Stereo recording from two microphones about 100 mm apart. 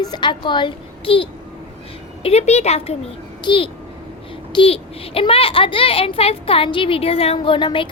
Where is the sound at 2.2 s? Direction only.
90° left.